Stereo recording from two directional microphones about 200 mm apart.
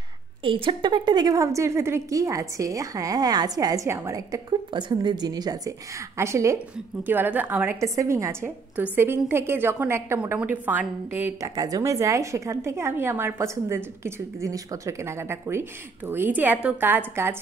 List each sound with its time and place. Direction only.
0.4 s a woman's voice: 25° right (ahead or behind)